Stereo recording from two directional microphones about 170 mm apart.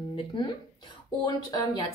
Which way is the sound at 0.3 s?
30° left (ahead or behind).